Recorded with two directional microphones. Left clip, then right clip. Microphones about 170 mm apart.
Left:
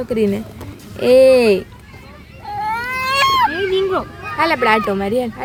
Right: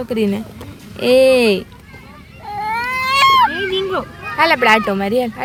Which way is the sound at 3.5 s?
20° right (ahead or behind).